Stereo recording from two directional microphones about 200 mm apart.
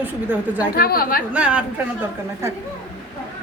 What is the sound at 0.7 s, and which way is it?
Speech, 50° left (ahead or behind).